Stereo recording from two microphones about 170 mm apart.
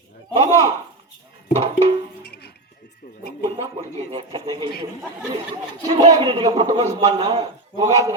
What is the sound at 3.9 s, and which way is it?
Speech, 35° right (ahead or behind).